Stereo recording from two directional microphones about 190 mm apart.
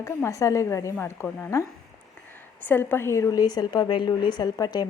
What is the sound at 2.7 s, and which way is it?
A woman's voice, 10° left (ahead or behind).